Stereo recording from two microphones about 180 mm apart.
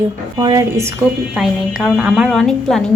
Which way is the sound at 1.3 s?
5° right (ahead or behind).